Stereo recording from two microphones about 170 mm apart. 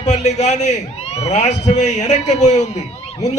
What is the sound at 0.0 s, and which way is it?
A man's voice, 40° left (ahead or behind).